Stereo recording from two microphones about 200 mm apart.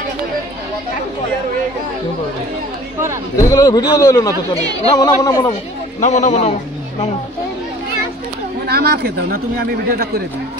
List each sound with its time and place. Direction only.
3.3 s a man's voice: 15° left (ahead or behind)
5.9 s a man's voice: 35° left (ahead or behind)
8.6 s a man's voice: 50° right (ahead or behind)